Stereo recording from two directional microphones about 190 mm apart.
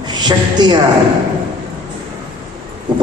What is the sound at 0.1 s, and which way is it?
Speech, 20° right (ahead or behind).